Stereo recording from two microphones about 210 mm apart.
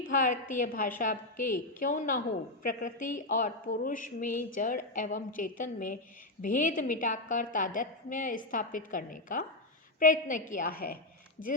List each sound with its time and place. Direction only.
0.1 s a woman's voice: 40° left (ahead or behind)